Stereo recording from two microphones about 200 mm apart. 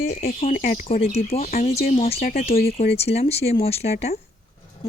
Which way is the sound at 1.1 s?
30° left (ahead or behind).